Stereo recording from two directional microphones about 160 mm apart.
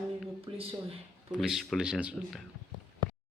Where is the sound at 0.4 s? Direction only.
35° right (ahead or behind).